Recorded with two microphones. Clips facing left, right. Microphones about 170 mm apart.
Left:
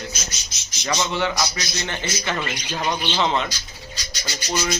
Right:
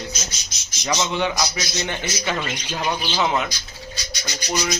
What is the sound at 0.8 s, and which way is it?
Speech, 10° right (ahead or behind).